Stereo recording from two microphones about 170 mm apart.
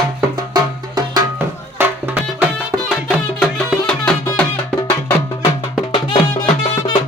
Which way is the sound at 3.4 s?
5° left (ahead or behind).